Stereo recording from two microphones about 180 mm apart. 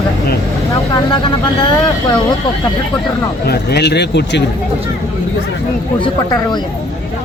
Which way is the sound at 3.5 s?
65° left (ahead or behind).